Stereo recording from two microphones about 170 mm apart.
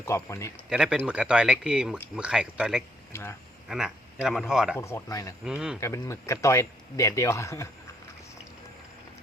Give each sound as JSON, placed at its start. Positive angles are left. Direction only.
{"t": 0.0, "sound": "speech", "side_deg": 15}
{"t": 0.7, "sound": "speech", "side_deg": -5}
{"t": 3.1, "sound": "speech", "side_deg": 15}
{"t": 3.7, "sound": "speech", "side_deg": -5}
{"t": 4.8, "sound": "speech", "side_deg": 15}
{"t": 5.5, "sound": "speech", "side_deg": -5}
{"t": 5.8, "sound": "speech", "side_deg": 15}